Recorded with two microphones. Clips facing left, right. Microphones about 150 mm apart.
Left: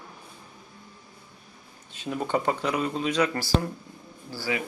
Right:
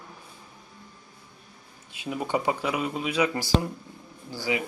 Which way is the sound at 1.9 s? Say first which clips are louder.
Left 1 dB; 10° right (ahead or behind).